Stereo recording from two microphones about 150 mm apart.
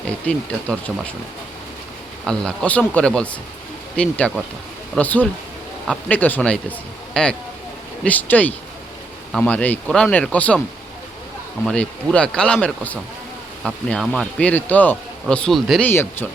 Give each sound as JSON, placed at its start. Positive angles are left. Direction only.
{"t": 0.3, "sound": "a man's voice", "side_deg": 10}
{"t": 2.2, "sound": "a man's voice", "side_deg": 5}
{"t": 11.6, "sound": "a man's voice", "side_deg": 10}
{"t": 15.9, "sound": "a man's voice", "side_deg": 15}